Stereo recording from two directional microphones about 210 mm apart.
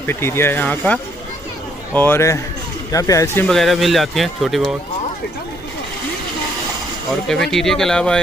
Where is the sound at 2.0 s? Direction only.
10° left (ahead or behind).